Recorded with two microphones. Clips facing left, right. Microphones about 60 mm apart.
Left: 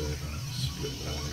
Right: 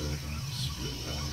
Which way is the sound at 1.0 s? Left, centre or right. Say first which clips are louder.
Left 1 dB; right.